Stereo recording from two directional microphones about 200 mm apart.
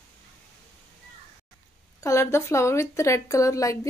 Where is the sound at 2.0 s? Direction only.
15° left (ahead or behind).